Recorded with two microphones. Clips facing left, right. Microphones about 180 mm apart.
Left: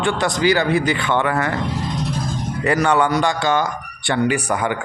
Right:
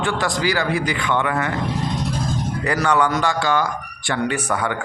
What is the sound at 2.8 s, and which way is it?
A man's voice, 25° left (ahead or behind).